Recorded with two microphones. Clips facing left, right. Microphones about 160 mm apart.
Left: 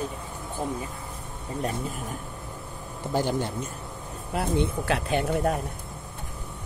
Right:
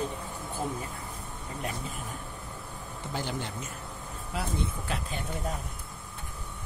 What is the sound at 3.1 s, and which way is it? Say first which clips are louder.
Speech: left 9 dB; 45° left (ahead or behind).